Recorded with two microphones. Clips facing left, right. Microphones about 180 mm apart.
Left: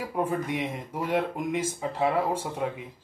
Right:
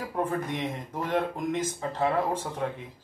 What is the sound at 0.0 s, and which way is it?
Speech, 10° left (ahead or behind).